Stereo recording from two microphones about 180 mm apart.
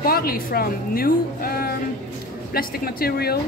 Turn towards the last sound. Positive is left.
turn(degrees=60)  # may be behind; listen again after turning